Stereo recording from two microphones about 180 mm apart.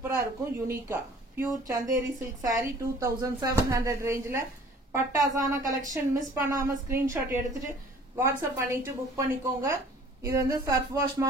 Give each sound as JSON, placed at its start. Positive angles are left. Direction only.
{"t": 0.0, "sound": "speech", "side_deg": -15}